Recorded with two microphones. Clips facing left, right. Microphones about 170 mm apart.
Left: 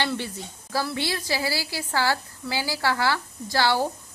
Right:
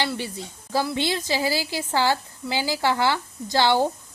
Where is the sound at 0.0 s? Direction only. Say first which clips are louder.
Right 1 dB; 10° right (ahead or behind).